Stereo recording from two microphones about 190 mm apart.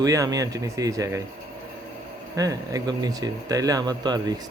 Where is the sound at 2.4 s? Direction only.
20° right (ahead or behind).